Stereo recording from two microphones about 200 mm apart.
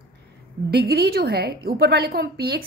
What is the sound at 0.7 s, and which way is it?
A woman's voice, 50° right (ahead or behind).